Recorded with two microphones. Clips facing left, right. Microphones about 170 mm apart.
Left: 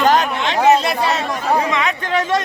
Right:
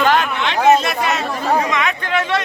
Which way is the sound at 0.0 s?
40° left (ahead or behind).